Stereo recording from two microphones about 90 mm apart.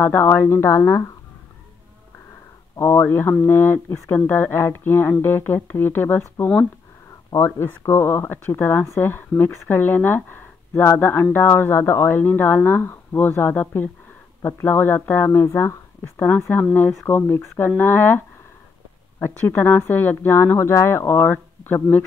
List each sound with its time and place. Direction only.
0.0 s a woman's voice: 25° left (ahead or behind)
2.7 s speech: 30° left (ahead or behind)
7.2 s speech: 35° left (ahead or behind)